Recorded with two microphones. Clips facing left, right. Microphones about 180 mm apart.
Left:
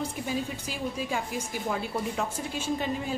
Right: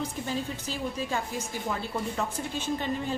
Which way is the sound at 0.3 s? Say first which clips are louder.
Even; 10° left (ahead or behind).